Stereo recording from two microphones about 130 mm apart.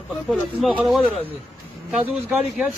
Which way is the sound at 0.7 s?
5° right (ahead or behind).